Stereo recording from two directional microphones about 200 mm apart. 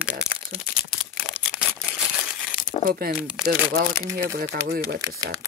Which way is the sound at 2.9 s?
50° right (ahead or behind).